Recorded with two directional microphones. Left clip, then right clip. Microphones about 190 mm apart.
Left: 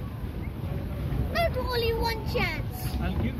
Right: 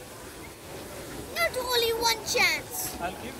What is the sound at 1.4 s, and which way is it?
Vehicle, 65° right (ahead or behind).